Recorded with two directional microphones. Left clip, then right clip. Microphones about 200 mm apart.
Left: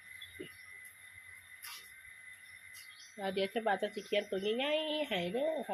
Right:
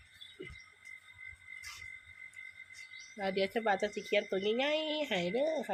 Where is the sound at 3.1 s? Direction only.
20° right (ahead or behind).